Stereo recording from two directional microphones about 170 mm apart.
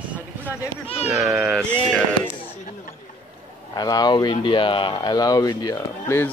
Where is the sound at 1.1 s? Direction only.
Centre (ahead or behind).